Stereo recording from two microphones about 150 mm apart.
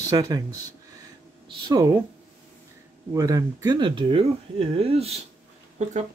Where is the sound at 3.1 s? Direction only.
25° right (ahead or behind).